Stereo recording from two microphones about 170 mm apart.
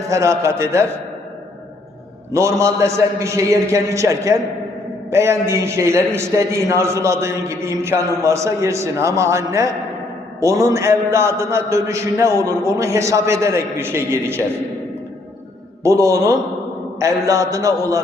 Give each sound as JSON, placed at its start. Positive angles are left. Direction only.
{"t": 0.1, "sound": "a man's voice", "side_deg": -15}
{"t": 2.3, "sound": "a man's voice", "side_deg": -15}
{"t": 15.8, "sound": "a man's voice", "side_deg": -20}